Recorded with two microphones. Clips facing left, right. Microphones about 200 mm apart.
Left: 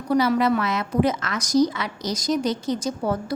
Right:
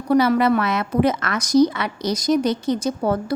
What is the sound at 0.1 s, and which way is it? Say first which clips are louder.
A woman's voice: right 3 dB; 60° right (ahead or behind).